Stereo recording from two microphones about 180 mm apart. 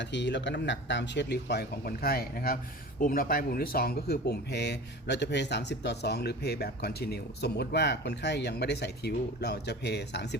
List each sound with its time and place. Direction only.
0.0 s speech: 75° left (ahead or behind)